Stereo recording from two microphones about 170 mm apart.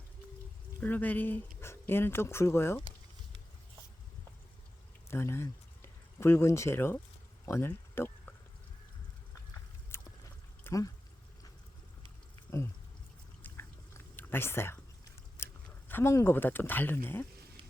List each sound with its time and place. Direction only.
0.8 s speech: 10° left (ahead or behind)
5.0 s speech: 15° left (ahead or behind)
7.4 s a sound: 15° left (ahead or behind)
9.9 s a sound: 15° left (ahead or behind)
13.4 s chewing: 15° left (ahead or behind)
15.9 s speech: 15° left (ahead or behind)